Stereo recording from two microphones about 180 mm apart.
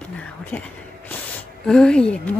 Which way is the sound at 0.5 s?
10° left (ahead or behind).